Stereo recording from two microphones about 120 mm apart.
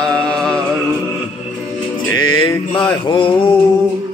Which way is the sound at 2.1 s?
35° left (ahead or behind).